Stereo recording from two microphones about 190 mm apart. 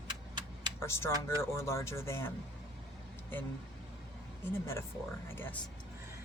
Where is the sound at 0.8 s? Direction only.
15° left (ahead or behind).